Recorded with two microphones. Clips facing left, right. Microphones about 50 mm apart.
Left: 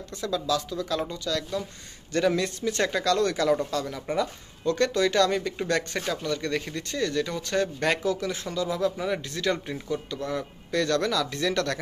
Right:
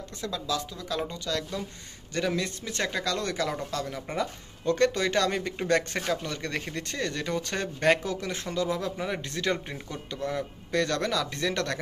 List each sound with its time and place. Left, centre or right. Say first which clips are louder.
0.6 s speech: left 3 dB; centre
1.2 s speech: left 3 dB; right
2.1 s speech: left 5 dB; centre
4.6 s speech: left 1 dB; right
8.0 s speech: left 4 dB; right
8.9 s speech: left 3 dB; centre